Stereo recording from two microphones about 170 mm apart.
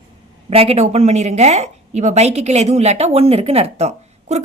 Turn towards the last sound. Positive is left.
turn(degrees=-40)  # may be behind; listen again after turning